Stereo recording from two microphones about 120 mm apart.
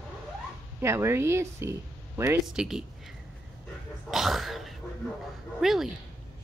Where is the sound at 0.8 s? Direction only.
20° right (ahead or behind).